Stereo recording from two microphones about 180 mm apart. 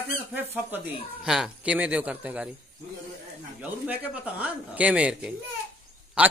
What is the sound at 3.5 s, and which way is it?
A man's voice, 10° right (ahead or behind).